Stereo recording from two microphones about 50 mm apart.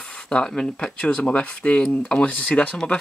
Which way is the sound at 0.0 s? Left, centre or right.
Centre.